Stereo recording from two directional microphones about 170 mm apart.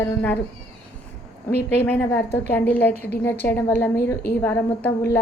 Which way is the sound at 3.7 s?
15° left (ahead or behind).